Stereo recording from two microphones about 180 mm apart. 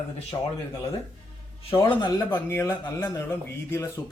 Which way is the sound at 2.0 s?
20° left (ahead or behind).